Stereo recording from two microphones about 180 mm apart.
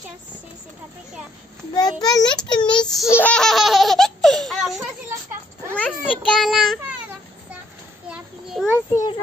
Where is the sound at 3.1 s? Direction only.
10° left (ahead or behind).